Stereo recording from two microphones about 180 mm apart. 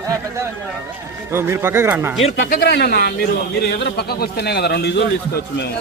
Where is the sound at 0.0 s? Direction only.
15° right (ahead or behind).